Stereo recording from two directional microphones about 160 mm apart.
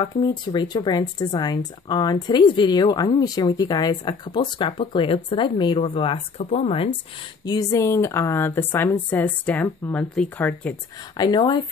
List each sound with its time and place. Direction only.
0.0 s speech: 25° left (ahead or behind)
7.4 s a woman's voice: 20° left (ahead or behind)
11.1 s speech: 25° left (ahead or behind)